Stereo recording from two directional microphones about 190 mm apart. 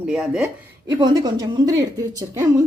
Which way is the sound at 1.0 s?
20° right (ahead or behind).